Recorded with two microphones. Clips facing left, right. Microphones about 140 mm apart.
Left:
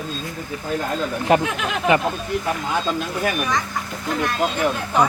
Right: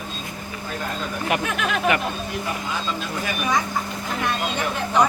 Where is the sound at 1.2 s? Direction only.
30° left (ahead or behind).